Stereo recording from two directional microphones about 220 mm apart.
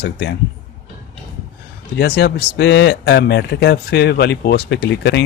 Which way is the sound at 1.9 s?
45° left (ahead or behind).